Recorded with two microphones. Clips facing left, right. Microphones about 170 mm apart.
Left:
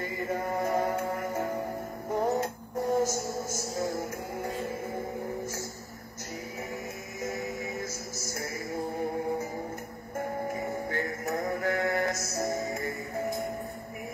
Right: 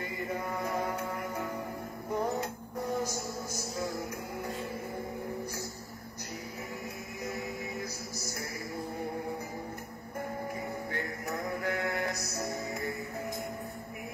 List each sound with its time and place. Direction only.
0.0 s chant: 45° left (ahead or behind)
2.1 s music: 45° left (ahead or behind)
11.2 s mantra: 45° left (ahead or behind)
12.4 s music: 45° left (ahead or behind)